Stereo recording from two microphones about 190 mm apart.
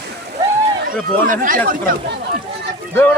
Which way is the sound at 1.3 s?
45° right (ahead or behind).